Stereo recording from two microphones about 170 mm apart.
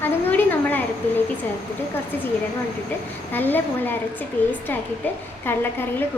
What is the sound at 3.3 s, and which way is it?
Speech, 10° left (ahead or behind).